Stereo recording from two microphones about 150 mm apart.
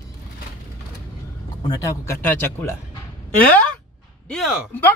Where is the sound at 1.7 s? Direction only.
20° left (ahead or behind).